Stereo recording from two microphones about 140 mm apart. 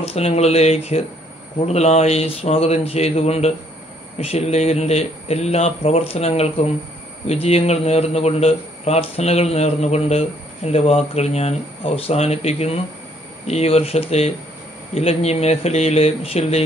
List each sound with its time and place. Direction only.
0.0 s speech: 45° left (ahead or behind)